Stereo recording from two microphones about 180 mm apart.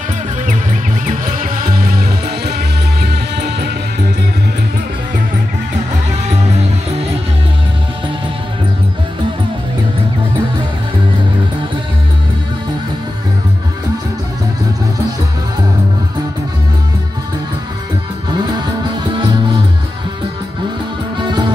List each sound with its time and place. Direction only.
1.0 s music: 50° right (ahead or behind)
3.0 s music: 70° right (ahead or behind)
21.2 s music: 25° right (ahead or behind)